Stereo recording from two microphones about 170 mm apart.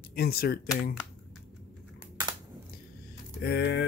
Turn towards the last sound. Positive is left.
turn(degrees=80)